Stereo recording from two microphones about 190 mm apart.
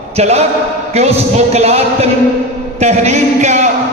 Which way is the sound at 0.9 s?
35° right (ahead or behind).